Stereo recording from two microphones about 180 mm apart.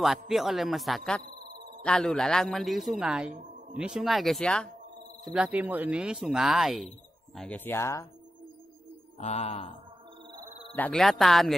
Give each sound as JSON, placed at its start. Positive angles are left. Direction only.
{"t": 0.3, "sound": "speech", "side_deg": 0}
{"t": 1.2, "sound": "a sound", "side_deg": -60}
{"t": 1.9, "sound": "speech", "side_deg": 5}
{"t": 5.2, "sound": "speech", "side_deg": -5}
{"t": 9.2, "sound": "mantra", "side_deg": 35}
{"t": 10.8, "sound": "speech", "side_deg": 5}